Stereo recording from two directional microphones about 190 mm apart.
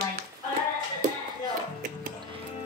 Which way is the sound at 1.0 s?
45° right (ahead or behind).